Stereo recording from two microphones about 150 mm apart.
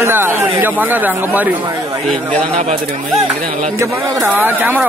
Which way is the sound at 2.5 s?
45° right (ahead or behind).